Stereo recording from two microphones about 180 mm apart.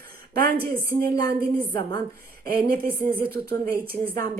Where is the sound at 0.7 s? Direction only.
55° right (ahead or behind).